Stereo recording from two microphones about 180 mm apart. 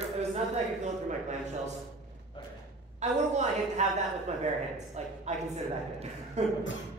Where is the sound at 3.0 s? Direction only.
40° right (ahead or behind).